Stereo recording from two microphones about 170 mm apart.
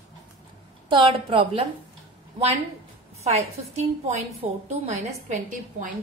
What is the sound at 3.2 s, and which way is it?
A woman's voice, 40° right (ahead or behind).